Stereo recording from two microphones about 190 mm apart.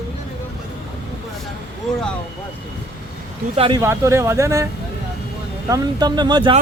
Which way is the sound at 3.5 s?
30° right (ahead or behind).